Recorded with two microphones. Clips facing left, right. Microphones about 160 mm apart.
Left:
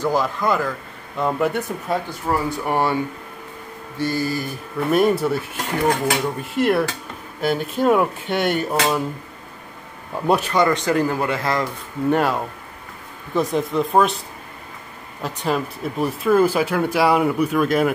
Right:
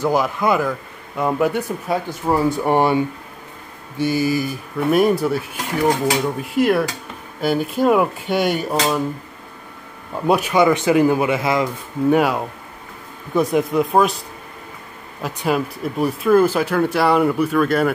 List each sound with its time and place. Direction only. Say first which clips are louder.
0.0 s a man's voice: right 2 dB; 15° right (ahead or behind)
2.3 s speech: right 5 dB; 25° right (ahead or behind)
4.0 s a man's voice: right 4 dB; 10° right (ahead or behind)
5.9 s a man's voice: right 2 dB; 15° right (ahead or behind)
6.2 s speech: right 2 dB; 5° right (ahead or behind)
10.1 s a man's voice: right 2 dB; centre (ahead or behind)
15.2 s speech: right 2 dB; 5° right (ahead or behind)